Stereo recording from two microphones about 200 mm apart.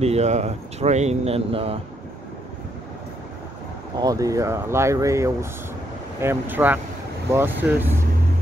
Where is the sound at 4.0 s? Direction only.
20° right (ahead or behind).